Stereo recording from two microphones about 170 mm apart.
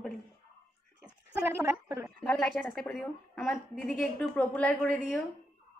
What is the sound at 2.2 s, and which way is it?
A woman's voice, 5° left (ahead or behind).